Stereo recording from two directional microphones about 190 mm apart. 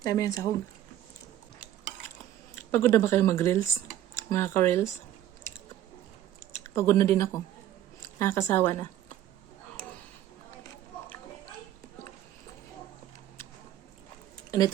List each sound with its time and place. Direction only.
0.0 s speech: 20° left (ahead or behind)
1.5 s stir: 5° right (ahead or behind)
2.7 s speech: 15° left (ahead or behind)
6.5 s a woman's voice: 15° left (ahead or behind)